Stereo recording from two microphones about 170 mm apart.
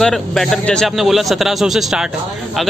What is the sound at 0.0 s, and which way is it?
Speech, 5° left (ahead or behind).